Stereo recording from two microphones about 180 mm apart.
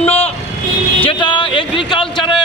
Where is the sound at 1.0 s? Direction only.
30° left (ahead or behind).